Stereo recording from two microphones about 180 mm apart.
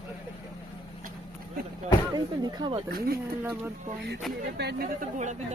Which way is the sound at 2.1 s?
25° right (ahead or behind).